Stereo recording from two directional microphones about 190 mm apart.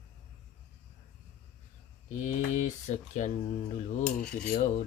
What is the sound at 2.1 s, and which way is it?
Speech, 40° left (ahead or behind).